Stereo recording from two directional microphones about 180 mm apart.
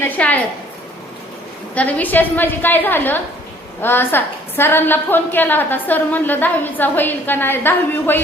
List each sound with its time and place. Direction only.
0.0 s a woman's voice: 10° left (ahead or behind)
1.7 s a woman's voice: 10° left (ahead or behind)